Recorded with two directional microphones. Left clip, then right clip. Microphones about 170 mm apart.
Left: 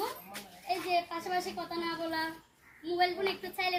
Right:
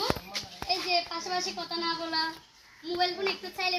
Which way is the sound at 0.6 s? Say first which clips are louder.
Right 2 dB; 15° left (ahead or behind).